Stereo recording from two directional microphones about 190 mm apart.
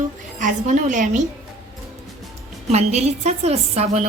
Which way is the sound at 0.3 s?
40° right (ahead or behind).